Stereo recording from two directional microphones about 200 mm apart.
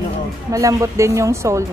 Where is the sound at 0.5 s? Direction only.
15° right (ahead or behind).